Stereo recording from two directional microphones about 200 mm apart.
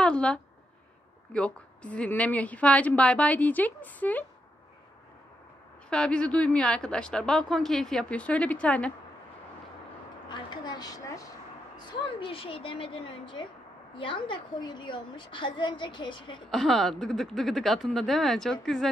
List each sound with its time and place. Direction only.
0.0 s a sound: 5° left (ahead or behind)
1.3 s a woman's voice: 5° left (ahead or behind)
5.9 s a woman's voice: 5° left (ahead or behind)
10.2 s speech: 20° left (ahead or behind)
16.4 s a woman's voice: centre (ahead or behind)